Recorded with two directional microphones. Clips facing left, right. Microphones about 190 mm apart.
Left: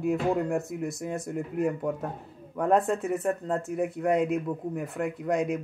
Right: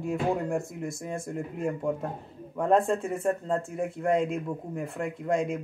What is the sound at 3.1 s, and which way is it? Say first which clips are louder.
Speech: even; 5° left (ahead or behind).